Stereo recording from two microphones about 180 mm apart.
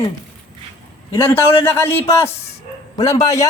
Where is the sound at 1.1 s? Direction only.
15° left (ahead or behind).